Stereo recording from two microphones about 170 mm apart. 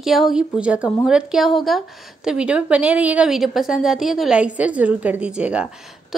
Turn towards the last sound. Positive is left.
turn(degrees=-5)  # may be behind; listen again after turning